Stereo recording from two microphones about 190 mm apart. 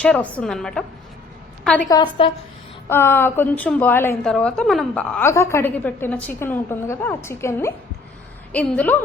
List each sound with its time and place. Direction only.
0.0 s a woman's voice: 5° left (ahead or behind)
1.9 s a woman's voice: 25° left (ahead or behind)
2.9 s a woman's voice: 10° left (ahead or behind)